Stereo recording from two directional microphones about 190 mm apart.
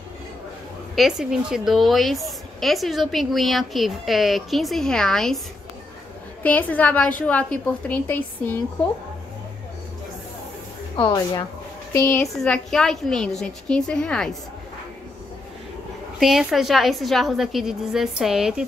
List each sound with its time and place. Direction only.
0.9 s speech: centre (ahead or behind)
6.4 s a woman's voice: 10° left (ahead or behind)
11.0 s a woman's voice: 25° left (ahead or behind)
12.4 s speech: 5° left (ahead or behind)
16.2 s speech: centre (ahead or behind)